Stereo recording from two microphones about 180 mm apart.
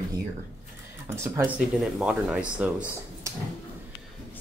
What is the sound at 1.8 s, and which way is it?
Speech, 5° right (ahead or behind).